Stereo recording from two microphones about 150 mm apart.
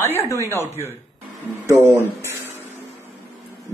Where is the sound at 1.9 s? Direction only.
15° right (ahead or behind).